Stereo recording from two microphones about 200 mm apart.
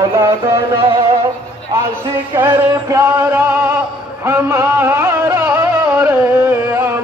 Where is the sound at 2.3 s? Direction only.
15° right (ahead or behind).